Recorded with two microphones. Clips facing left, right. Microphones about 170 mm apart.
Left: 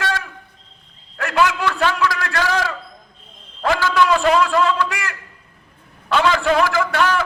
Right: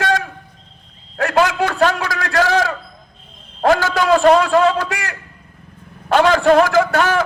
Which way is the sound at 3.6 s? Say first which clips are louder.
Right 2 dB; 45° right (ahead or behind).